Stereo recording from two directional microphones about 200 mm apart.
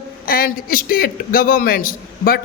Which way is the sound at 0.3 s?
45° left (ahead or behind).